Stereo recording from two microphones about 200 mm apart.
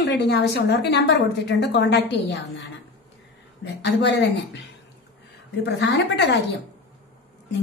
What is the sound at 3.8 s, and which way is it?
Speech, 60° left (ahead or behind).